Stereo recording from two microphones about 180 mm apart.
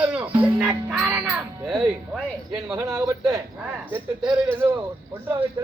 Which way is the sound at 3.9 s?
10° right (ahead or behind).